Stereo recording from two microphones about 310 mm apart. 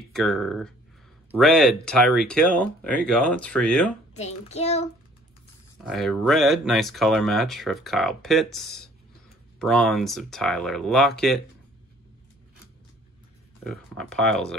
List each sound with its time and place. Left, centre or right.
0.1 s speech: centre
4.1 s a child's voice: left
5.8 s speech: centre
13.7 s speech: centre